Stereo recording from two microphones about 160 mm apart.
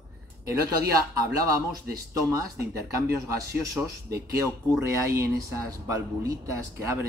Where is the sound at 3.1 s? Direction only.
20° right (ahead or behind).